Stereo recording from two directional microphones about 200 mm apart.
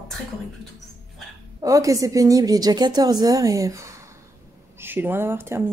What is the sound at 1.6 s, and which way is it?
A woman's voice, 15° right (ahead or behind).